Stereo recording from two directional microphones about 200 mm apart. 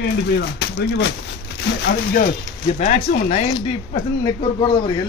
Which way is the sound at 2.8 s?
35° left (ahead or behind).